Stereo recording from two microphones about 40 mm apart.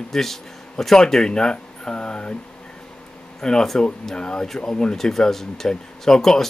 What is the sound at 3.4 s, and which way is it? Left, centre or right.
Speech, centre.